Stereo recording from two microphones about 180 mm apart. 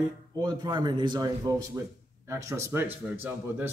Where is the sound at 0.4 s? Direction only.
25° right (ahead or behind).